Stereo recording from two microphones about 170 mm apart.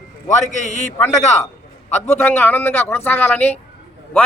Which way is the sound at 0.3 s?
45° left (ahead or behind).